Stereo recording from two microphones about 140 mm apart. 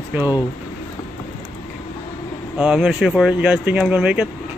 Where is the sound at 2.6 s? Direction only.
5° right (ahead or behind).